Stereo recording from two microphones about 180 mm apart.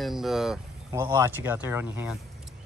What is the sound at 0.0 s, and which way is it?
Speech, centre (ahead or behind).